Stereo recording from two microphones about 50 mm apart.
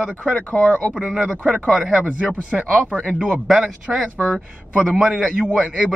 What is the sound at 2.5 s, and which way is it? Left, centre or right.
A man's voice, centre.